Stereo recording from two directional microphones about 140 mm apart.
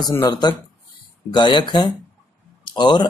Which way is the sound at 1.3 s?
35° left (ahead or behind).